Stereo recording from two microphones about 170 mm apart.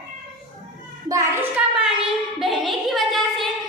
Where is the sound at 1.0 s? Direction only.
20° right (ahead or behind).